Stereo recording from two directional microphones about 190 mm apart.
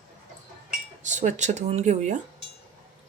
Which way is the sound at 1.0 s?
40° right (ahead or behind).